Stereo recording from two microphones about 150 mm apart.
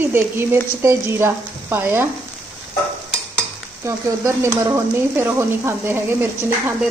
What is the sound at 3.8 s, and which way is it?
Speech, 20° right (ahead or behind).